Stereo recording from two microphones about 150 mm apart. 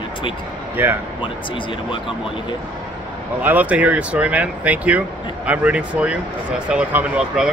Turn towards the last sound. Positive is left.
turn(degrees=-5)  # may be behind; listen again after turning